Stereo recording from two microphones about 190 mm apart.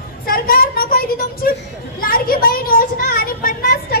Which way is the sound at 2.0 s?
50° left (ahead or behind).